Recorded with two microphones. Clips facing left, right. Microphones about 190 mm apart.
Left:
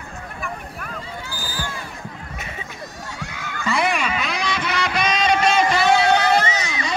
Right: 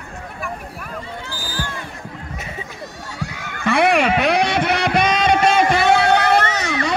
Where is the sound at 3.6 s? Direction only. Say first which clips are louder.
Right 6 dB; 65° right (ahead or behind).